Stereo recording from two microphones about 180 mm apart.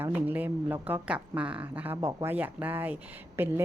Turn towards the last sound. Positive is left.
turn(degrees=-15)  # may be behind; listen again after turning